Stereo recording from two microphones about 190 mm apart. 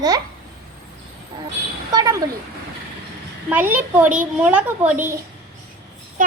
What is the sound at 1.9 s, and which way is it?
Speech, 20° right (ahead or behind).